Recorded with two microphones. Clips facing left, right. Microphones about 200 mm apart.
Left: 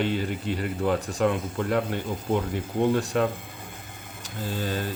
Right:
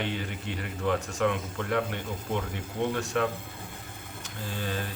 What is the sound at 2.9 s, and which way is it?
Speech, 35° left (ahead or behind).